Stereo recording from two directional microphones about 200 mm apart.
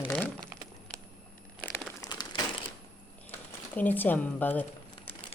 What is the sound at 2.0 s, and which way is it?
Crumpling, 20° left (ahead or behind).